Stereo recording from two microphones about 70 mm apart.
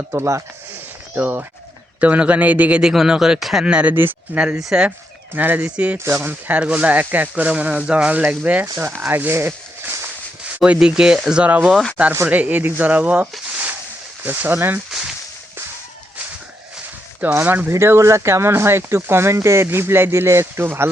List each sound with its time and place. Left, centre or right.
0.1 s speech: right
1.1 s speech: right
2.9 s speech: centre
5.3 s speech: right
6.0 s speech: right
6.6 s speech: centre
8.8 s speech: right
10.8 s speech: centre
11.4 s speech: right
14.3 s speech: right
14.8 s a sound: centre
17.3 s speech: right
17.7 s speech: right